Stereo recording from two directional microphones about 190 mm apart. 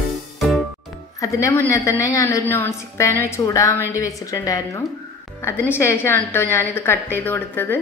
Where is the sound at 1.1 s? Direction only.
15° left (ahead or behind).